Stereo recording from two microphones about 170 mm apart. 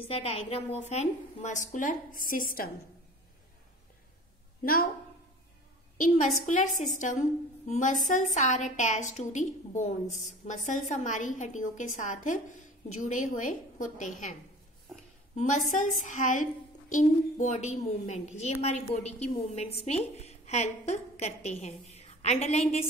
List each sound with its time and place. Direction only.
0.1 s a woman's voice: 35° left (ahead or behind); by 2.7 s 55° left (ahead or behind)
5.9 s a woman's voice: 50° left (ahead or behind)
15.3 s a woman's voice: 45° left (ahead or behind)